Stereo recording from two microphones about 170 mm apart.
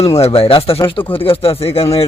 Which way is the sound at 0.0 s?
35° left (ahead or behind).